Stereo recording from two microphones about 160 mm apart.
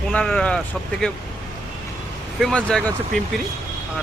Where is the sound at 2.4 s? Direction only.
5° left (ahead or behind).